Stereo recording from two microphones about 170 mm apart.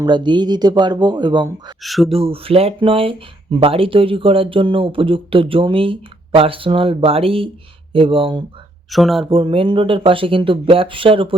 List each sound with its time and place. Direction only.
0.0 s speech: 25° right (ahead or behind)
1.8 s speech: centre (ahead or behind)
2.1 s speech: 35° right (ahead or behind)
8.9 s speech: centre (ahead or behind)
9.2 s speech: 30° right (ahead or behind)